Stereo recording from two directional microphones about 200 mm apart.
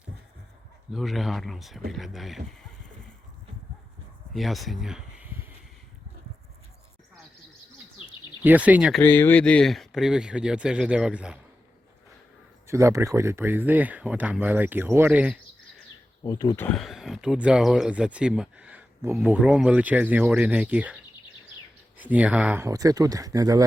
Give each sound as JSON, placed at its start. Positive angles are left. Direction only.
{"t": 0.9, "sound": "speech", "side_deg": 0}
{"t": 4.4, "sound": "a sound", "side_deg": 0}
{"t": 8.4, "sound": "speech", "side_deg": -5}
{"t": 9.0, "sound": "speech", "side_deg": 10}
{"t": 12.6, "sound": "speech", "side_deg": -15}
{"t": 16.2, "sound": "speech", "side_deg": 20}
{"t": 16.6, "sound": "speech", "side_deg": 5}